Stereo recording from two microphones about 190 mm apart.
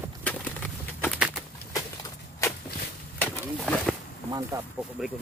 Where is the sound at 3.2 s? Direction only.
5° left (ahead or behind).